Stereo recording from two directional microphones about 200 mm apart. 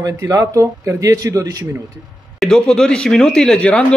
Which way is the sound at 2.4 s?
5° left (ahead or behind).